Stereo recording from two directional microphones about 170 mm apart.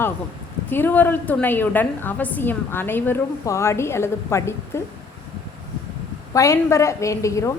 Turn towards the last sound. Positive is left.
turn(degrees=20)  # may be behind; listen again after turning